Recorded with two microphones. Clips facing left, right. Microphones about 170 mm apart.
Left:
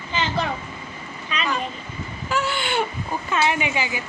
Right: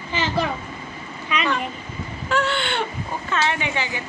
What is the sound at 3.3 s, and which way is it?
Speech, 10° left (ahead or behind).